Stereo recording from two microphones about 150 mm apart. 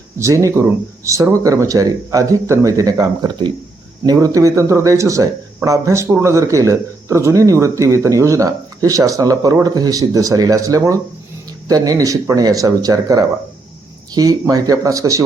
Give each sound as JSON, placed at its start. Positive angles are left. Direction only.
{"t": 0.2, "sound": "speech", "side_deg": -20}